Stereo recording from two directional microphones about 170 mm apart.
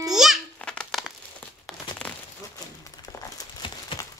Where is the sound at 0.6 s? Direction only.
5° left (ahead or behind).